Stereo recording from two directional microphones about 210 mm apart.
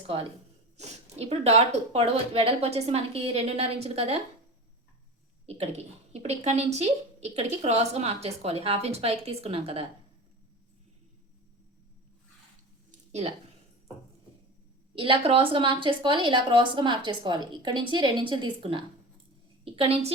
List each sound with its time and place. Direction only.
0.8 s a woman's voice: 30° right (ahead or behind)
5.5 s a woman's voice: 30° right (ahead or behind)
12.9 s a sound: 30° right (ahead or behind)
14.9 s a woman's voice: 25° right (ahead or behind)